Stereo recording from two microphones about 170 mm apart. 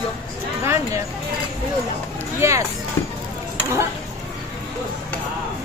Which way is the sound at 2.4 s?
15° right (ahead or behind).